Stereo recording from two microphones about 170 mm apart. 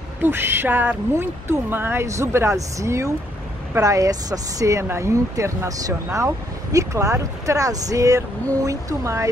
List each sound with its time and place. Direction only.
0.2 s speech: 15° right (ahead or behind)